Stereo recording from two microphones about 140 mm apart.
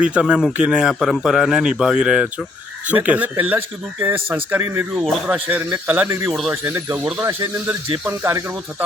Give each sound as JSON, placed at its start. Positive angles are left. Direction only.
{"t": 0.0, "sound": "a man's voice", "side_deg": -10}